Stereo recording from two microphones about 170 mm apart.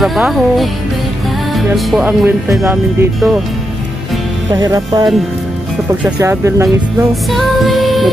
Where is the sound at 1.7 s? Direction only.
5° right (ahead or behind).